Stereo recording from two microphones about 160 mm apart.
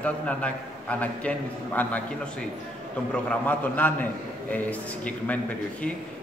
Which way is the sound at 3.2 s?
10° left (ahead or behind).